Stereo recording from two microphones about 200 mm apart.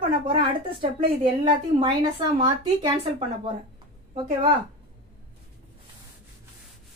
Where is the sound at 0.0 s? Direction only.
25° right (ahead or behind).